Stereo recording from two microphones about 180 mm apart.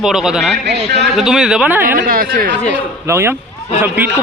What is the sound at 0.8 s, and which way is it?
Speech, 70° right (ahead or behind).